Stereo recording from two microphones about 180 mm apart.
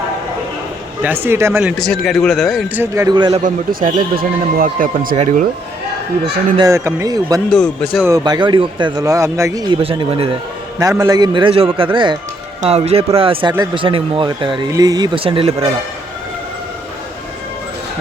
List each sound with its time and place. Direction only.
1.0 s speech: 10° right (ahead or behind)
1.8 s speech: 5° left (ahead or behind)
2.8 s speech: 15° right (ahead or behind)
3.2 s speech: 25° right (ahead or behind)
3.4 s speech: 50° right (ahead or behind)
5.1 s speech: 35° right (ahead or behind)
6.6 s speech: 15° right (ahead or behind)
7.5 s speech: 5° left (ahead or behind)
8.0 s speech: 20° right (ahead or behind)
9.8 s speech: 30° right (ahead or behind)
10.8 s speech: 20° right (ahead or behind)